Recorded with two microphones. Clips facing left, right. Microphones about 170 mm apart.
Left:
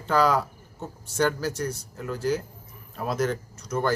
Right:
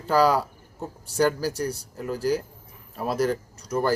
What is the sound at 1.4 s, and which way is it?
Speech, 35° right (ahead or behind).